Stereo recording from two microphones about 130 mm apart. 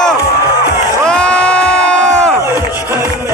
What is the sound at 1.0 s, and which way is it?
Crowd, 5° left (ahead or behind).